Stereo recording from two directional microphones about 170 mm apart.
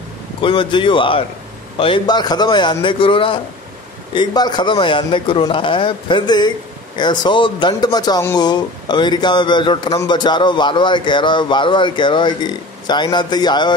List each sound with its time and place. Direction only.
0.4 s a man's voice: 30° left (ahead or behind)